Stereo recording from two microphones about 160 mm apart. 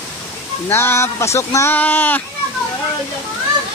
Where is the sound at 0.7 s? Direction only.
15° left (ahead or behind).